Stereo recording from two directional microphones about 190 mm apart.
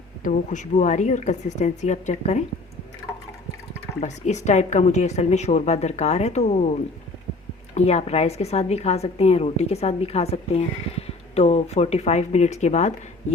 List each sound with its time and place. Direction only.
0.2 s a woman's voice: 40° left (ahead or behind)
4.0 s a woman's voice: 35° left (ahead or behind)
7.8 s a woman's voice: 35° left (ahead or behind)